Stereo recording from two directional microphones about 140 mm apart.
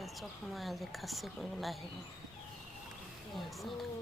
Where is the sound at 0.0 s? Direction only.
Centre (ahead or behind).